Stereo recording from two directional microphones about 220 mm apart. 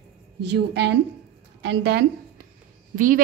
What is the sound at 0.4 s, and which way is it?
A woman's voice, 50° right (ahead or behind).